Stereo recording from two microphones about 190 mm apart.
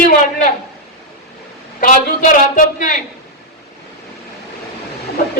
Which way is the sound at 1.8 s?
45° left (ahead or behind).